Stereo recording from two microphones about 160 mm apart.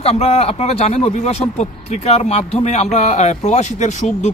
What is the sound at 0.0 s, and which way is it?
Speech, 40° left (ahead or behind).